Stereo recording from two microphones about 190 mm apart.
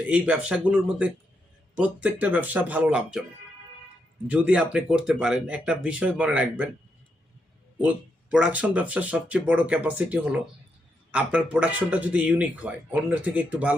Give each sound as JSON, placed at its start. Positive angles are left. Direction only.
{"t": 0.1, "sound": "speech", "side_deg": -5}
{"t": 4.3, "sound": "speech", "side_deg": -5}
{"t": 7.8, "sound": "speech", "side_deg": -5}